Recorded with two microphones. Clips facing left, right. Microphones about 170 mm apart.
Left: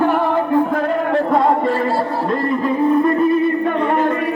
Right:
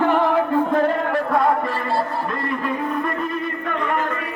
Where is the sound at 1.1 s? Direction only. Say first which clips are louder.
Left 4 dB; 25° left (ahead or behind).